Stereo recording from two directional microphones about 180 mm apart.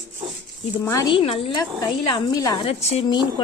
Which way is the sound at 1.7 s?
20° left (ahead or behind).